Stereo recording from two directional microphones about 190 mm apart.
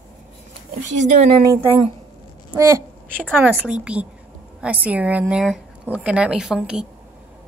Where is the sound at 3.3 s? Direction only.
10° right (ahead or behind).